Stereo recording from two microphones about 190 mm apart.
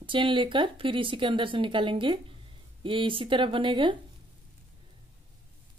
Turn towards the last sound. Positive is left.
turn(degrees=-25)  # may be behind; listen again after turning